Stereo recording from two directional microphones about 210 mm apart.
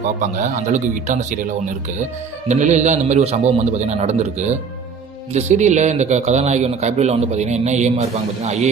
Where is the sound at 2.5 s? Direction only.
35° right (ahead or behind).